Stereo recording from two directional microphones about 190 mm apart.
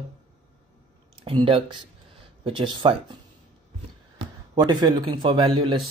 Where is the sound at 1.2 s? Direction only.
30° right (ahead or behind).